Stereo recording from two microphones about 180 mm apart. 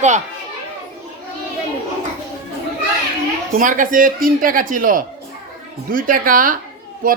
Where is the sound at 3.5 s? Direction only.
50° right (ahead or behind).